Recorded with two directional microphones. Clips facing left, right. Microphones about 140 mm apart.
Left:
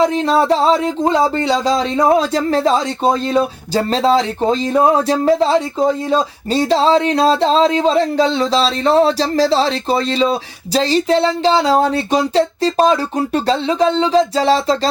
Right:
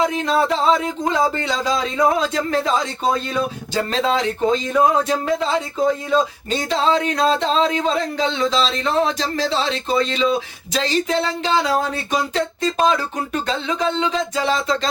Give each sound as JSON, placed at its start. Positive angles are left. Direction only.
{"t": 0.1, "sound": "speech", "side_deg": 35}